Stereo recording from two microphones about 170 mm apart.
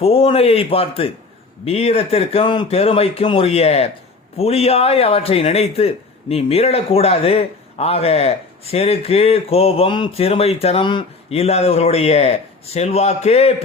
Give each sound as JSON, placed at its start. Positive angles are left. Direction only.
{"t": 0.0, "sound": "a man's voice", "side_deg": 35}